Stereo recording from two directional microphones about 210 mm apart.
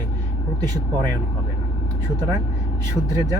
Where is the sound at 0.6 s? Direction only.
20° right (ahead or behind).